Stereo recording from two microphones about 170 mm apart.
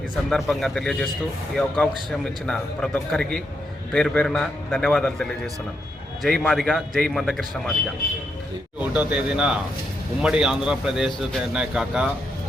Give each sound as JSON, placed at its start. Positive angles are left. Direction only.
{"t": 0.3, "sound": "a man's voice", "side_deg": 0}
{"t": 8.8, "sound": "a man's voice", "side_deg": -10}